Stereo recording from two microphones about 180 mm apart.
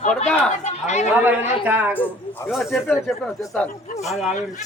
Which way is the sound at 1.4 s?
40° left (ahead or behind).